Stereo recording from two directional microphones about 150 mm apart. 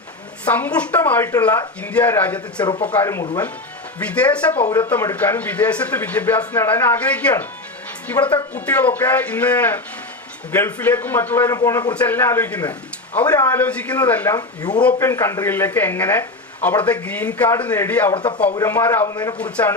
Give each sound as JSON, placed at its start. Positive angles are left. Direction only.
{"t": 0.4, "sound": "speech", "side_deg": 10}
{"t": 14.3, "sound": "a man's voice", "side_deg": 25}
{"t": 18.1, "sound": "speech", "side_deg": 35}
{"t": 18.7, "sound": "a man's voice", "side_deg": 15}
{"t": 19.4, "sound": "speech", "side_deg": 10}